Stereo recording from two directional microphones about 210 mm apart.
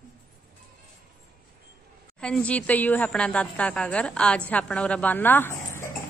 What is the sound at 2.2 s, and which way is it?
A woman's voice, 5° left (ahead or behind).